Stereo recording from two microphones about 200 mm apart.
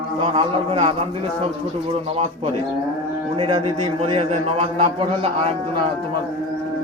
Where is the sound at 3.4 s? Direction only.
25° right (ahead or behind).